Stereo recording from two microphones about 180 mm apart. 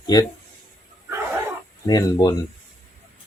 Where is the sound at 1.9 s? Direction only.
20° left (ahead or behind).